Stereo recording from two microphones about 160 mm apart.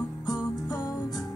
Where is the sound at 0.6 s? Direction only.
25° left (ahead or behind).